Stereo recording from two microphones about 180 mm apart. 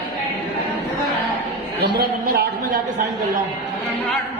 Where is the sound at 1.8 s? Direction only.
60° right (ahead or behind).